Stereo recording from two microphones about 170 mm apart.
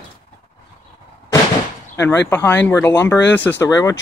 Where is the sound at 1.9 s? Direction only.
15° left (ahead or behind).